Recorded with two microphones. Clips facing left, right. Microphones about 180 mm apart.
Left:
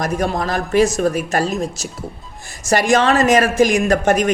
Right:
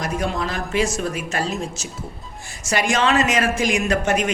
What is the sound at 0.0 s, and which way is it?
Speech, 45° left (ahead or behind).